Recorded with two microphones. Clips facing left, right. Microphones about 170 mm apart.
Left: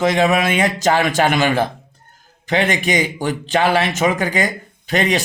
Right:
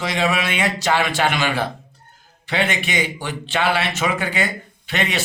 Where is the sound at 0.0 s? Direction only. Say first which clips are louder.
Left 6 dB; 45° left (ahead or behind).